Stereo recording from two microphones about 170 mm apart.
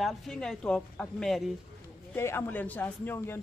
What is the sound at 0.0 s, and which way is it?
Speech, centre (ahead or behind).